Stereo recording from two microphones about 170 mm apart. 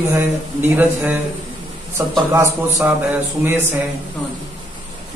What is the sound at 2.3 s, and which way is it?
Speech, 15° right (ahead or behind).